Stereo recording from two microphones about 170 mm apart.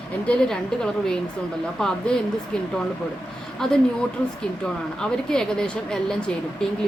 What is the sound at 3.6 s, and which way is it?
Speech, 5° left (ahead or behind).